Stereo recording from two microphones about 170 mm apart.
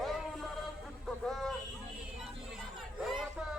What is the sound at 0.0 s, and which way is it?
Music, centre (ahead or behind).